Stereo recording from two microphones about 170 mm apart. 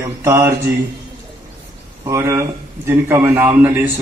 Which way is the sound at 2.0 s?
15° right (ahead or behind).